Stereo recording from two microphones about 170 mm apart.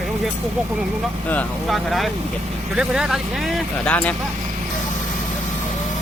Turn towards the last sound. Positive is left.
turn(degrees=10)  # may be behind; listen again after turning